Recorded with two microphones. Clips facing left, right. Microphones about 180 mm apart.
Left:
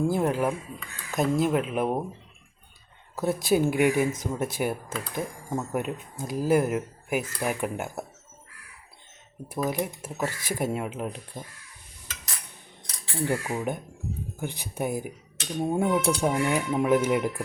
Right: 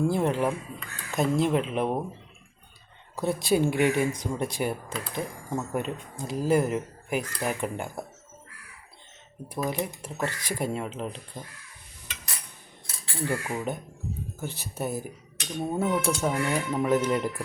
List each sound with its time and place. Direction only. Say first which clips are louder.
0.1 s speech: even; 5° left (ahead or behind)
3.2 s speech: left 1 dB; 5° left (ahead or behind)
9.5 s speech: left 2 dB; 5° left (ahead or behind)
12.8 s cutlery: left 2 dB; 20° left (ahead or behind)
13.4 s speech: left 1 dB; 10° left (ahead or behind)